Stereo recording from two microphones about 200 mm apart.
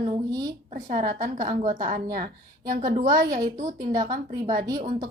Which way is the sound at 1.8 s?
25° right (ahead or behind).